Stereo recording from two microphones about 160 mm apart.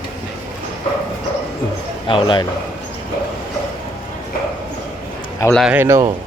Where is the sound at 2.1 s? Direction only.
30° left (ahead or behind).